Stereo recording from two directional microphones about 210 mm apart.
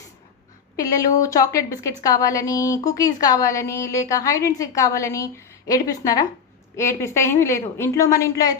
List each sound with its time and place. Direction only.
0.9 s a woman's voice: 15° left (ahead or behind)